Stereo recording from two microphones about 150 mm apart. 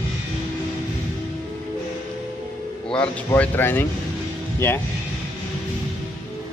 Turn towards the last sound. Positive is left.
turn(degrees=15)  # may be behind; listen again after turning